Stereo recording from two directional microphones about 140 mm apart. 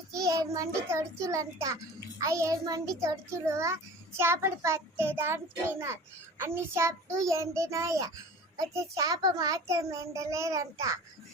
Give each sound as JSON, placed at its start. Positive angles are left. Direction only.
{"t": 0.1, "sound": "child singing", "side_deg": -25}
{"t": 0.9, "sound": "a child's voice", "side_deg": -20}